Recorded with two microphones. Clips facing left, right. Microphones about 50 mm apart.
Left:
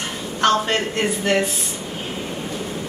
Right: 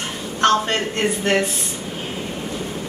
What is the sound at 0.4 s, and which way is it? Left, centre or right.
Speech, centre.